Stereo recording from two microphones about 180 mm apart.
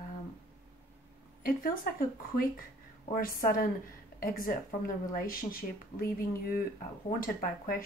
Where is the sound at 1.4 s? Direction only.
50° left (ahead or behind).